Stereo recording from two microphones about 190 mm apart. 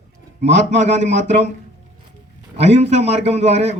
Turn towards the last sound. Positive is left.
turn(degrees=-35)  # may be behind; listen again after turning